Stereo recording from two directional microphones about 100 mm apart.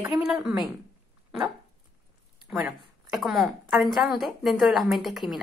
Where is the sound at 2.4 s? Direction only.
5° right (ahead or behind).